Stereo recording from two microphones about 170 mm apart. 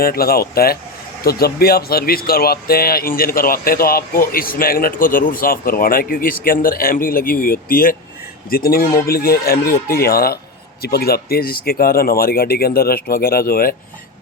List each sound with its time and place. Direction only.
0.0 s speech: 60° left (ahead or behind)